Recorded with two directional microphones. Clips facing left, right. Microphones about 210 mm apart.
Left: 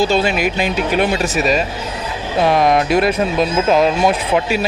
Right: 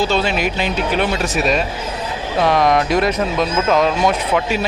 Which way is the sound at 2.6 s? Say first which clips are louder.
Left 1 dB; 25° left (ahead or behind).